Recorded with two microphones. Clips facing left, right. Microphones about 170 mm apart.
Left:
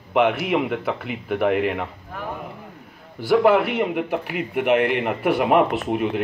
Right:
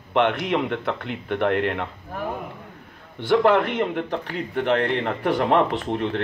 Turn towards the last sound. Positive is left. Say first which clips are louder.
# left 2 dB
turn(degrees=10)  # may be behind; listen again after turning